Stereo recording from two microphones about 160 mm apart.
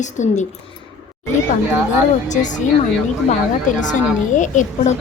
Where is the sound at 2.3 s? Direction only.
50° left (ahead or behind).